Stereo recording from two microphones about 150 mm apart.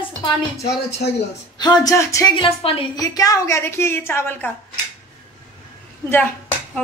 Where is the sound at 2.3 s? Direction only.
35° left (ahead or behind).